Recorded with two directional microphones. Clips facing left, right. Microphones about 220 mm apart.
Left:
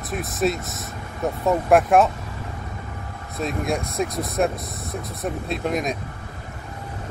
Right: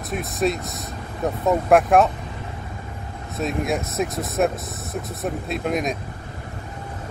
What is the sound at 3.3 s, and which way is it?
Speech, centre (ahead or behind).